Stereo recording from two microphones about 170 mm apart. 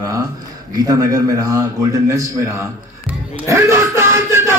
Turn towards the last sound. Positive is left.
turn(degrees=-15)  # may be behind; listen again after turning